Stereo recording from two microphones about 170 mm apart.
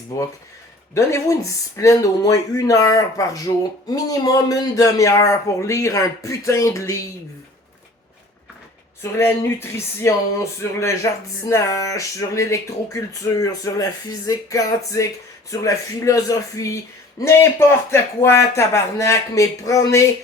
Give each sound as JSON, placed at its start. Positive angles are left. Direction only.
{"t": 0.9, "sound": "speech", "side_deg": 15}
{"t": 9.0, "sound": "speech", "side_deg": 15}